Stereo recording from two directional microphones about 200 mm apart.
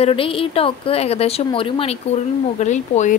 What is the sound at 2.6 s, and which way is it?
Speech, 35° left (ahead or behind).